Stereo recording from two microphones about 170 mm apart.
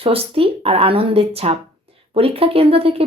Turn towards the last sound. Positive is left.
turn(degrees=-35)  # may be behind; listen again after turning